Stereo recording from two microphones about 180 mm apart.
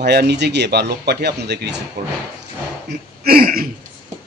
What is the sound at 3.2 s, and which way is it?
Speech, 50° right (ahead or behind).